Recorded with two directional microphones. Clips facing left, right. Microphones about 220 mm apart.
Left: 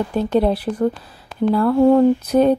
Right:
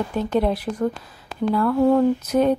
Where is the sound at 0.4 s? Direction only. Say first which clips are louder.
Left 4 dB; 30° left (ahead or behind).